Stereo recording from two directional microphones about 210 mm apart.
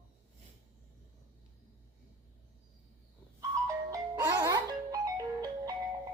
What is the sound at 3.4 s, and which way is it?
Music, 15° right (ahead or behind).